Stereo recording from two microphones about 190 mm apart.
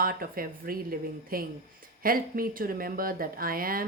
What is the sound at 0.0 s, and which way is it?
Speech, 50° right (ahead or behind).